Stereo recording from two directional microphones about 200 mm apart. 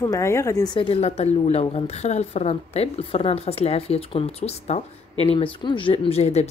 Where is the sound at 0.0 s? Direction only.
15° left (ahead or behind).